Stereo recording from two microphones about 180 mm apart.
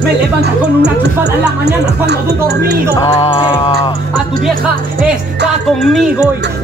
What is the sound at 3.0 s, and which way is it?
Music, 25° left (ahead or behind).